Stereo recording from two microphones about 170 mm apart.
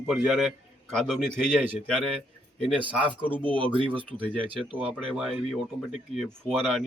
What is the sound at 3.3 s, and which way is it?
Speech, 10° left (ahead or behind).